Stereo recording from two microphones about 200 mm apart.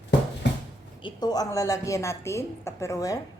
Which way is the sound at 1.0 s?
20° left (ahead or behind).